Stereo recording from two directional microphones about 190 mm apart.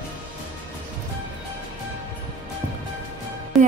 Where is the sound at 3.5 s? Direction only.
Centre (ahead or behind).